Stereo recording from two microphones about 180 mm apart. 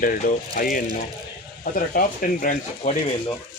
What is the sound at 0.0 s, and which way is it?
Speech, 50° left (ahead or behind).